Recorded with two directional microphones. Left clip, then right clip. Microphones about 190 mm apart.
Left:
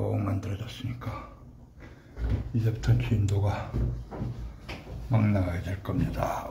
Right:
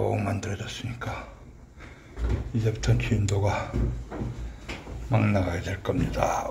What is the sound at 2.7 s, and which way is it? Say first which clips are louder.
Speech: right 5 dB; 5° left (ahead or behind).